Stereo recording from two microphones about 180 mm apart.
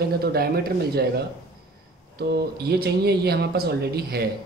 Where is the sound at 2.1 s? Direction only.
60° right (ahead or behind).